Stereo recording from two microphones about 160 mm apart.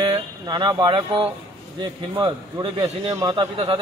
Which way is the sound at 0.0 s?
30° right (ahead or behind).